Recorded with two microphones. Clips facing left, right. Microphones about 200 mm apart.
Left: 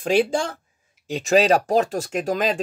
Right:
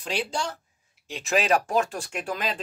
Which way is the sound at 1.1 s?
35° left (ahead or behind).